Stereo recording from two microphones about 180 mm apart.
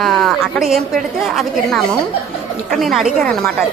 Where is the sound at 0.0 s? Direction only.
Centre (ahead or behind).